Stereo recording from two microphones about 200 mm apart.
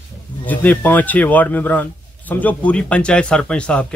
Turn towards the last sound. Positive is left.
turn(degrees=5)  # may be behind; listen again after turning